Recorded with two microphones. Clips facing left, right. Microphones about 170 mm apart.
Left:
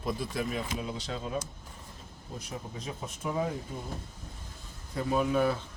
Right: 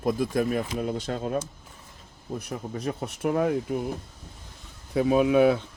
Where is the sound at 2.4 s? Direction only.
65° right (ahead or behind).